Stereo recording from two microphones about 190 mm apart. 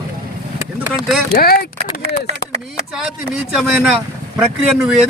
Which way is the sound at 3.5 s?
5° right (ahead or behind).